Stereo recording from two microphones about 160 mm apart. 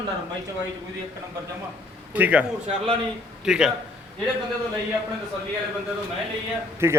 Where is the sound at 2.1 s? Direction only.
10° right (ahead or behind).